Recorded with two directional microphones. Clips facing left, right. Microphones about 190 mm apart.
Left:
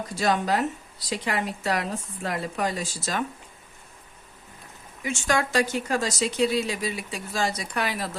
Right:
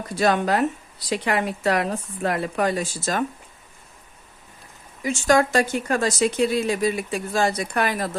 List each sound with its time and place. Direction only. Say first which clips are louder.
0.2 s speech: right 4 dB; 60° right (ahead or behind)
5.0 s speech: right 7 dB; 45° right (ahead or behind)